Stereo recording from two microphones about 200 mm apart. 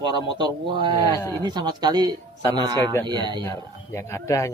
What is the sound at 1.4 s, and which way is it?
A man's voice, 20° right (ahead or behind).